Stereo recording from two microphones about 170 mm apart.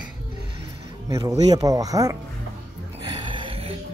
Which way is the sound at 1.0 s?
20° right (ahead or behind).